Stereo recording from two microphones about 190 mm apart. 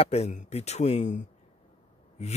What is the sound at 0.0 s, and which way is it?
Speech, 35° left (ahead or behind).